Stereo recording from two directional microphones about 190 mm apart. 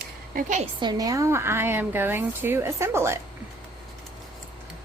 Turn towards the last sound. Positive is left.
turn(degrees=-15)  # may be behind; listen again after turning